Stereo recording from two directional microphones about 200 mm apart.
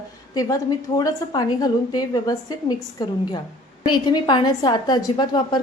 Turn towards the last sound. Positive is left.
turn(degrees=20)  # may be behind; listen again after turning